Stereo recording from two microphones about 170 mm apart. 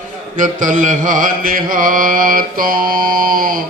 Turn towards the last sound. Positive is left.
turn(degrees=-55)  # may be behind; listen again after turning